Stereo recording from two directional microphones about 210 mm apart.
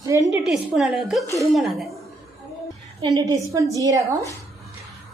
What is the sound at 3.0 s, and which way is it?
A woman's voice, 20° right (ahead or behind).